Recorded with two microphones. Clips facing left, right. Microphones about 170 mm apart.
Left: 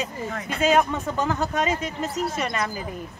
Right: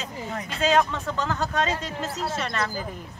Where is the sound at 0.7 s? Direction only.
15° left (ahead or behind).